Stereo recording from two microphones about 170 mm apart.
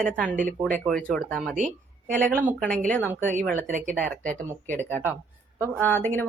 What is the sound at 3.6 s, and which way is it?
Speech, 50° right (ahead or behind).